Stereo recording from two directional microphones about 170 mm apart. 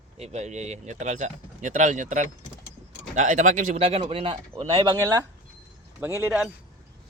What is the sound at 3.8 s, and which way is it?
Speech, 35° right (ahead or behind).